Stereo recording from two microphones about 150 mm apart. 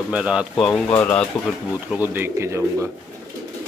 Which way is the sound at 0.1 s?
5° right (ahead or behind).